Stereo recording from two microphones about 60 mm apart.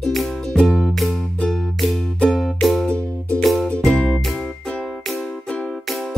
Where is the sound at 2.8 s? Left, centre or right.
Left.